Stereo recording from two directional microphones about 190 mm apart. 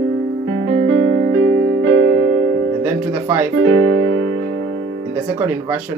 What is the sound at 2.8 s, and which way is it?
Music, 10° right (ahead or behind).